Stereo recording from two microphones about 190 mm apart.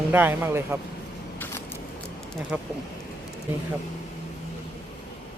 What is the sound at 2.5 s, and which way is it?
Speech, 5° right (ahead or behind).